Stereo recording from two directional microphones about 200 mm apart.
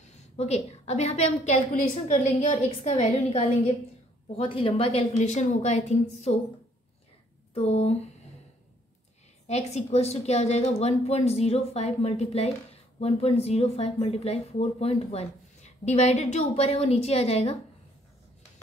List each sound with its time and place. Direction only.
0.0 s a woman's voice: 35° left (ahead or behind)
7.5 s a woman's voice: 30° left (ahead or behind)
9.5 s a woman's voice: 35° left (ahead or behind)